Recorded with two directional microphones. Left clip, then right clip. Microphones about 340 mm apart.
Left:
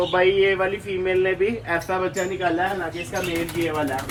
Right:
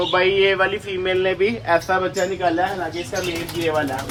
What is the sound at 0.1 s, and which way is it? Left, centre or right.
Speech, right.